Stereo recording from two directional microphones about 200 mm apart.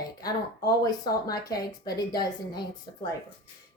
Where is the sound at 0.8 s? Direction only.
20° left (ahead or behind).